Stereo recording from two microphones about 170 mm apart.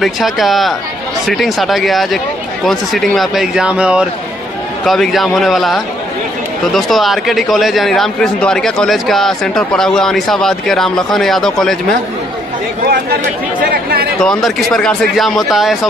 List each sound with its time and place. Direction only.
0.0 s a man's voice: centre (ahead or behind)
12.8 s speech: 65° right (ahead or behind)
14.2 s a man's voice: 5° left (ahead or behind)